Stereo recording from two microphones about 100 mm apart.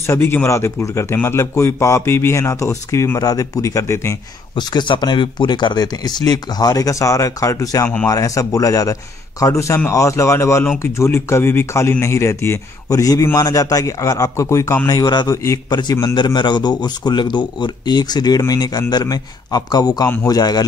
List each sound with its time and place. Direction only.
0.0 s a man's voice: 25° left (ahead or behind)
4.6 s a man's voice: 50° left (ahead or behind)